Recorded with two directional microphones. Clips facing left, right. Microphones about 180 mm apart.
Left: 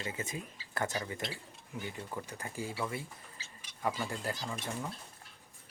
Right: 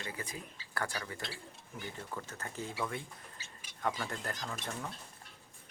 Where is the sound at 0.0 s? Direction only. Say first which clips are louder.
Left 3 dB; 25° left (ahead or behind); by 4.9 s 5° left (ahead or behind).